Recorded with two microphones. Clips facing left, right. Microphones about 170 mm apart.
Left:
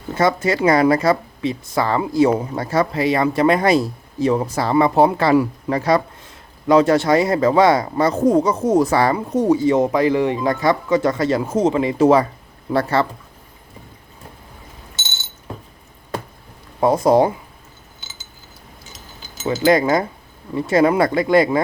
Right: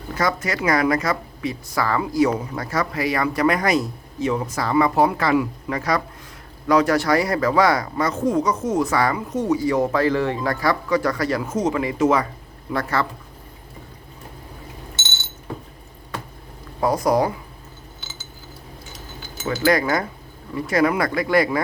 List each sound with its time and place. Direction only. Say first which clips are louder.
0.1 s speech: left 6 dB; 25° left (ahead or behind)
16.8 s speech: left 5 dB; 25° left (ahead or behind)
19.4 s speech: left 4 dB; 20° left (ahead or behind)